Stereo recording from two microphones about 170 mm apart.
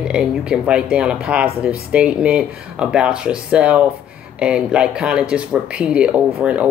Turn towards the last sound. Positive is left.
turn(degrees=-5)  # may be behind; listen again after turning